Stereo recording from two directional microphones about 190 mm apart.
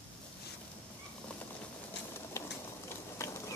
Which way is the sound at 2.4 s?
15° left (ahead or behind).